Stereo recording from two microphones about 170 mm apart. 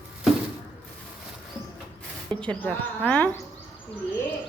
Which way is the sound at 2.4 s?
5° left (ahead or behind).